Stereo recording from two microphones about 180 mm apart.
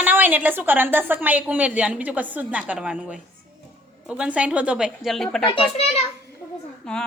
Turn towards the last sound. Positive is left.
turn(degrees=5)  # may be behind; listen again after turning